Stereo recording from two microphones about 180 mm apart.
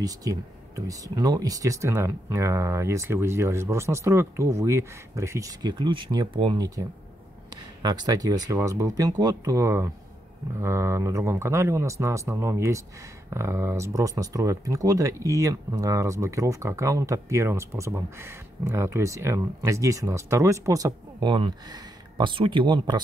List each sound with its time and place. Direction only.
0.0 s speech: 20° right (ahead or behind)